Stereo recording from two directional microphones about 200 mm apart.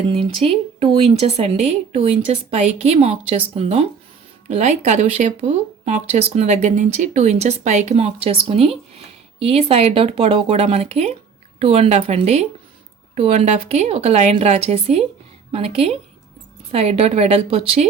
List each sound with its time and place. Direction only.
0.1 s a woman's voice: 30° right (ahead or behind)